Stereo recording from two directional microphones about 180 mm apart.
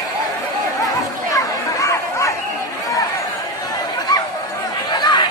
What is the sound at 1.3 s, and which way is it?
Chatter, 15° left (ahead or behind).